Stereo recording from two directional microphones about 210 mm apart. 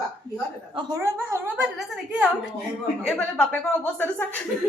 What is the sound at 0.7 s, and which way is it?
Speech, 20° right (ahead or behind).